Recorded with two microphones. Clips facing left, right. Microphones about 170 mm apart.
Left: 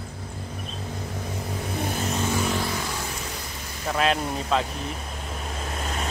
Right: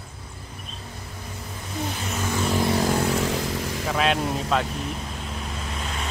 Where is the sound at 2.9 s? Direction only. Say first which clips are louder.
Right 10 dB; 70° right (ahead or behind).